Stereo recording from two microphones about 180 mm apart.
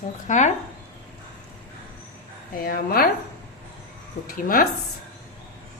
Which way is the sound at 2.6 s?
55° left (ahead or behind).